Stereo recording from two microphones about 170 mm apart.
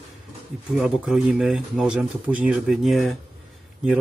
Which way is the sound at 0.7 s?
5° right (ahead or behind).